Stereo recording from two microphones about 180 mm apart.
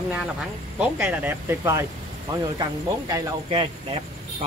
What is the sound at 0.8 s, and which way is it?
Speech, 5° right (ahead or behind).